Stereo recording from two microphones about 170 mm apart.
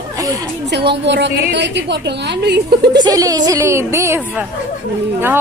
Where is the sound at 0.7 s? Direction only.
80° right.